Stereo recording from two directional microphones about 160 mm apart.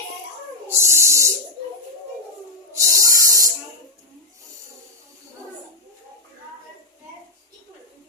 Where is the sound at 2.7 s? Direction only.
20° right (ahead or behind).